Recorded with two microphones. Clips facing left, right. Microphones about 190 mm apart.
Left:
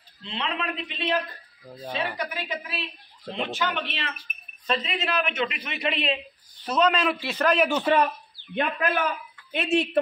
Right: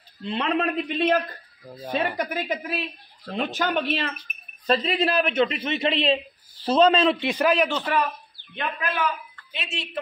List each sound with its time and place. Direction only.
0.2 s a man's voice: 45° right (ahead or behind); by 7.3 s 25° right (ahead or behind)
7.3 s speech: 5° right (ahead or behind)
7.9 s speech: 25° left (ahead or behind)
8.5 s a man's voice: 50° left (ahead or behind)